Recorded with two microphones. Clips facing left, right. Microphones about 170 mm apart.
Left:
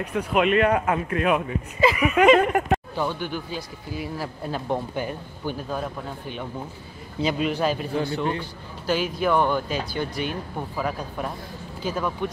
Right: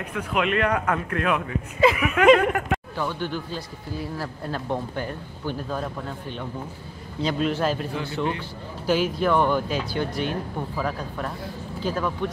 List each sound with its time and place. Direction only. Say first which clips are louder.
0.1 s speech: left 4 dB; 25° left (ahead or behind)
1.8 s speech: right 1 dB; centre (ahead or behind)
2.3 s speech: left 2 dB; 25° left (ahead or behind); by 5.9 s 10° left (ahead or behind)
7.2 s speech: even; 5° left (ahead or behind)